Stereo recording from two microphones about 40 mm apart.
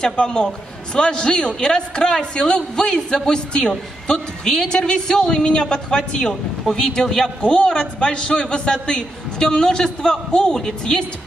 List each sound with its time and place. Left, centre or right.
0.0 s a man's voice: left